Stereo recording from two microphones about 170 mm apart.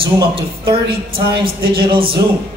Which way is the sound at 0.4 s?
30° right (ahead or behind).